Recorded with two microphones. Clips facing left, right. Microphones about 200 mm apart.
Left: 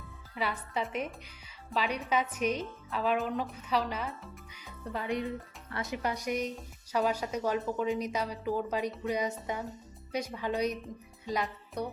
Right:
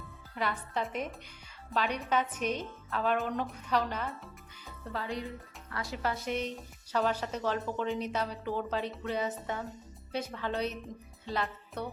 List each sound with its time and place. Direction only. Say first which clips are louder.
0.3 s a woman's voice: even; 10° left (ahead or behind)
4.5 s a woman's voice: left 1 dB; 15° left (ahead or behind)
11.3 s music: left 1 dB; 15° left (ahead or behind)